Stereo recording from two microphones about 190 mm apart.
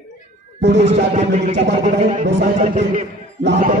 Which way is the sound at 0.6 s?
70° right (ahead or behind).